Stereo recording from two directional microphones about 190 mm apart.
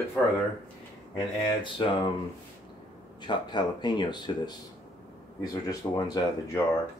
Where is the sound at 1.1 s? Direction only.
25° left (ahead or behind).